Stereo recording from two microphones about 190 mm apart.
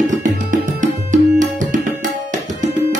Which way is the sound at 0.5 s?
40° right (ahead or behind).